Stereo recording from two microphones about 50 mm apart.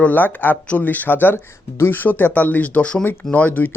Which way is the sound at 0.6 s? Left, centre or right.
Left.